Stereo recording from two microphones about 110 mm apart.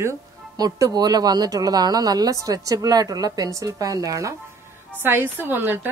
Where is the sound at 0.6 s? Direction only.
35° right (ahead or behind).